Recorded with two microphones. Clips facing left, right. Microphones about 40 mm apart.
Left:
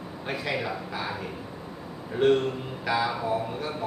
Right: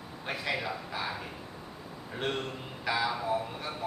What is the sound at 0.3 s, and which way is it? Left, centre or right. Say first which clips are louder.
Speech: left 3 dB; centre.